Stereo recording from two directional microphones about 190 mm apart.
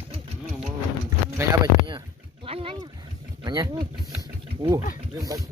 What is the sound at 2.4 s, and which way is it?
Boat, 30° right (ahead or behind).